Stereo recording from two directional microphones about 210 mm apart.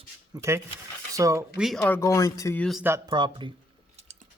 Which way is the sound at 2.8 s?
15° right (ahead or behind).